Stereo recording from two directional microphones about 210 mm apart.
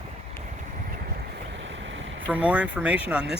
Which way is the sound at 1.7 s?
60° right (ahead or behind).